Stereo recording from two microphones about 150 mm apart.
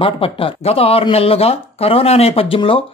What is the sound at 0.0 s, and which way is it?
Speech, 35° left (ahead or behind).